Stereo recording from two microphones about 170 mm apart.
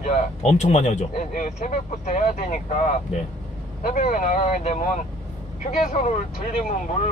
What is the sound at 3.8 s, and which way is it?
Speech, 55° left (ahead or behind).